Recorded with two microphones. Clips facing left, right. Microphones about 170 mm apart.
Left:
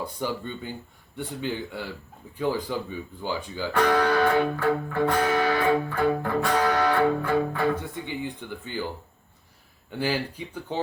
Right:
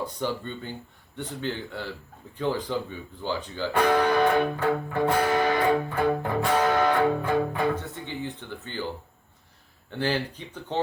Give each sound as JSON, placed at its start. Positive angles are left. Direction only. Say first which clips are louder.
{"t": 0.0, "sound": "speech", "louder": "even", "side_deg": 10}
{"t": 3.7, "sound": "music", "louder": "even", "side_deg": -20}
{"t": 7.8, "sound": "speech", "louder": "left 2 dB", "side_deg": 15}
{"t": 9.9, "sound": "speech", "louder": "even", "side_deg": 10}